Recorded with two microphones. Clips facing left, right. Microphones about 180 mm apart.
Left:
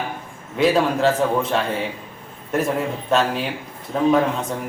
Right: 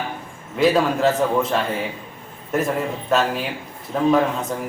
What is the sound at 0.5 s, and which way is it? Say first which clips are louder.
A man's voice: even; centre (ahead or behind).